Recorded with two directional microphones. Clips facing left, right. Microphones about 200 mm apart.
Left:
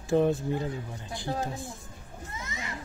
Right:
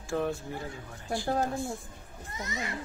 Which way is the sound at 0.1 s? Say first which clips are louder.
Left 7 dB; 20° left (ahead or behind).